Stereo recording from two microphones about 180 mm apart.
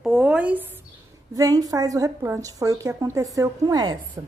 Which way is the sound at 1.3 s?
20° right (ahead or behind).